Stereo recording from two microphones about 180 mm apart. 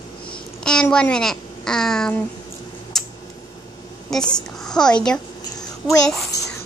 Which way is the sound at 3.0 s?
Centre (ahead or behind).